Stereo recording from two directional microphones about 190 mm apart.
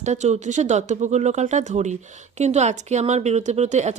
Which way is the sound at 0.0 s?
35° right (ahead or behind).